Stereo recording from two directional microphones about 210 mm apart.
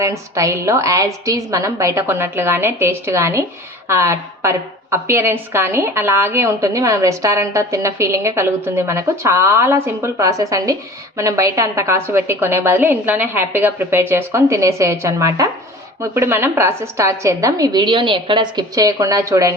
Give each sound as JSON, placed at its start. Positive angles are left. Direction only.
{"t": 0.0, "sound": "a woman's voice", "side_deg": -15}